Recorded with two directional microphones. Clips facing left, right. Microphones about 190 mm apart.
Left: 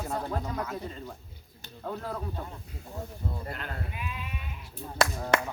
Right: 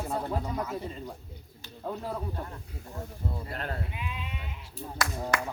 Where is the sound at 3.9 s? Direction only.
20° right (ahead or behind).